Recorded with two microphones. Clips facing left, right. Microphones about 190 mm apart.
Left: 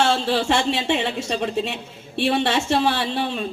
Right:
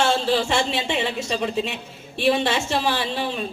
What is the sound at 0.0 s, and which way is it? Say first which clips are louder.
Speech: even; 60° left (ahead or behind).